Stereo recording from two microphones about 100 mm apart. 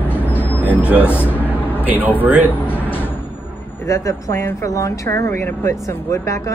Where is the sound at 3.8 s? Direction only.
30° left (ahead or behind).